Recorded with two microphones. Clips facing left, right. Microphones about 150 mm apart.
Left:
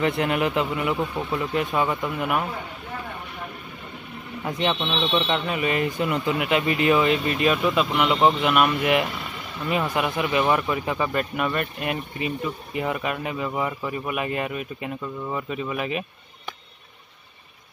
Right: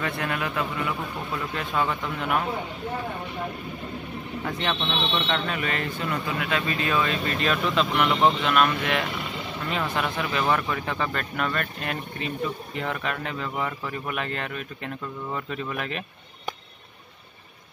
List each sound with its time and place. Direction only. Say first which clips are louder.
0.0 s a man's voice: left 6 dB; 20° left (ahead or behind)
4.5 s speech: left 4 dB; 15° left (ahead or behind)